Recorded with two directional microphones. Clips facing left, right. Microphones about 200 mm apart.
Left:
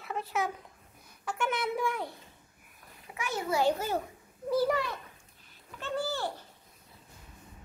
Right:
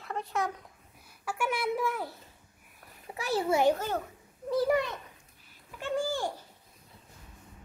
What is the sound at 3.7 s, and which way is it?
Speech, 10° left (ahead or behind).